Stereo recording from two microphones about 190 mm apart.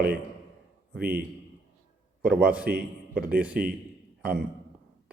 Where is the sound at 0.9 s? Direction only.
50° right (ahead or behind).